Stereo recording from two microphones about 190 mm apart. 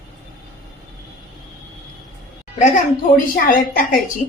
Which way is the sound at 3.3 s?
45° left (ahead or behind).